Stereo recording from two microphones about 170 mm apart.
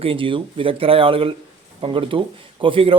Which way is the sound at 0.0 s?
30° right (ahead or behind).